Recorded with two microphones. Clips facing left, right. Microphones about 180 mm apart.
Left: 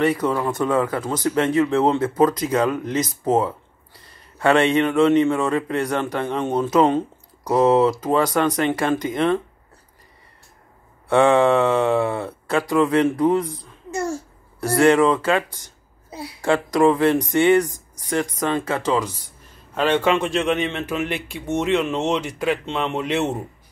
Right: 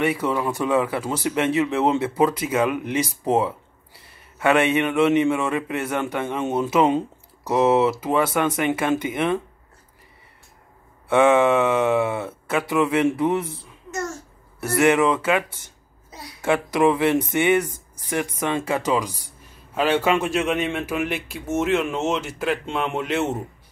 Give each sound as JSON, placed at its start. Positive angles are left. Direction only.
{"t": 0.0, "sound": "speech", "side_deg": -10}
{"t": 11.1, "sound": "speech", "side_deg": -5}
{"t": 13.8, "sound": "a sound", "side_deg": 30}
{"t": 14.9, "sound": "a man's voice", "side_deg": -10}